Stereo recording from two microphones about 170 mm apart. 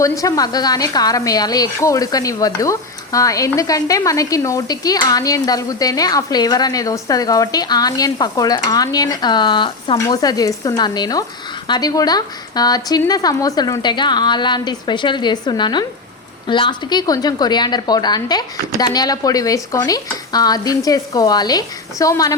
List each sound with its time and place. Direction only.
0.0 s a woman's voice: 20° left (ahead or behind)